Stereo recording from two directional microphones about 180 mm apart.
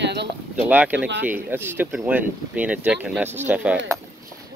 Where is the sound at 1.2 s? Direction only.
10° right (ahead or behind).